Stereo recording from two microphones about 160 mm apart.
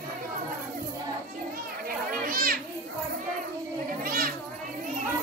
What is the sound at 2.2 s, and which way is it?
Children playing, 65° right (ahead or behind).